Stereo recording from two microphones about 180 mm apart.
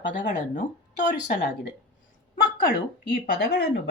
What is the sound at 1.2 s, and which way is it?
Speech, 70° left (ahead or behind).